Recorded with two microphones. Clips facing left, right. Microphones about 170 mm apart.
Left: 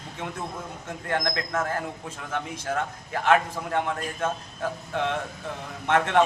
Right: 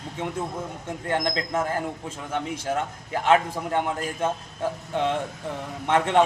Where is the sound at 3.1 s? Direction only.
20° right (ahead or behind).